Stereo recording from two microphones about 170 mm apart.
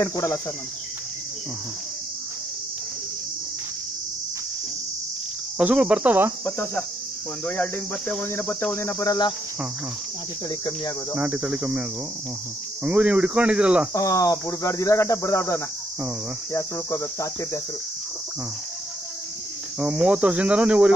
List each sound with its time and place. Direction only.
0.0 s speech: 20° left (ahead or behind)
5.6 s speech: 5° right (ahead or behind)
6.4 s speech: 15° left (ahead or behind)
11.1 s speech: 10° right (ahead or behind)
12.8 s speech: 5° right (ahead or behind)
13.9 s speech: 20° left (ahead or behind)
19.8 s speech: 5° right (ahead or behind)